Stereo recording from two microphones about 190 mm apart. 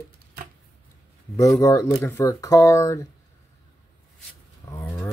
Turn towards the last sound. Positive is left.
turn(degrees=15)  # may be behind; listen again after turning